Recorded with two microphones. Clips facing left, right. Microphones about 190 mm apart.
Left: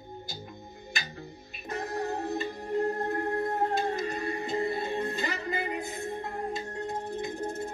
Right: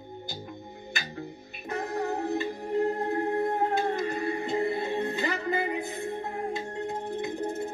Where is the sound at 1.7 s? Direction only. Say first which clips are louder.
Right 2 dB; 60° right (ahead or behind).